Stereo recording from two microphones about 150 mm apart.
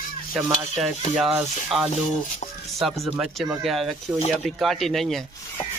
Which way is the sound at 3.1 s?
5° right (ahead or behind).